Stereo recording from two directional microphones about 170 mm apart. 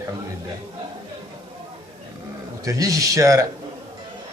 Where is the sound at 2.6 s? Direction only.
20° right (ahead or behind).